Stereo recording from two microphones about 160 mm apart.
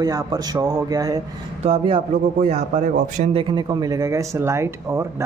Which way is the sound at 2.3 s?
50° right (ahead or behind).